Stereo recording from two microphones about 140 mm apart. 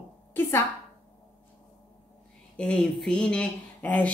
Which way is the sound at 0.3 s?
20° left (ahead or behind).